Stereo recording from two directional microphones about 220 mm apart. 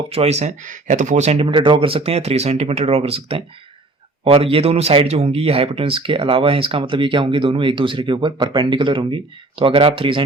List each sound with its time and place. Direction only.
0.1 s speech: 30° right (ahead or behind)